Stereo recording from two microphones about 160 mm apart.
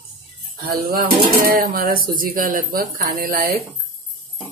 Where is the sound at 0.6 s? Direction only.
65° right (ahead or behind).